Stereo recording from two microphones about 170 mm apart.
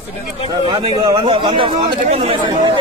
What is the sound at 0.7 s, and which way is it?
Speech, 25° right (ahead or behind).